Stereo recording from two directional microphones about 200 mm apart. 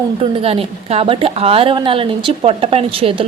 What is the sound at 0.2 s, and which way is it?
A woman's voice, 30° right (ahead or behind).